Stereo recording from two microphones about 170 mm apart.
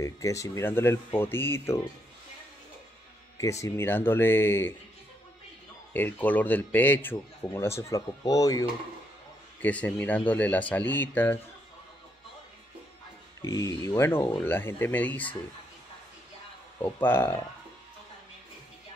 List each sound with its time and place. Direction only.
0.0 s speech: 20° left (ahead or behind)
3.3 s speech: 15° left (ahead or behind)
5.9 s speech: 10° left (ahead or behind)
9.6 s speech: 10° left (ahead or behind)
13.4 s speech: 20° left (ahead or behind)
16.8 s speech: 10° left (ahead or behind)